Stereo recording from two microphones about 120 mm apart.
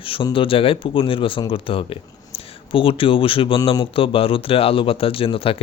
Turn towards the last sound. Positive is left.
turn(degrees=50)  # may be behind; listen again after turning